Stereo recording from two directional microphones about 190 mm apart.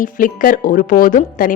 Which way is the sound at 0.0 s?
45° left (ahead or behind).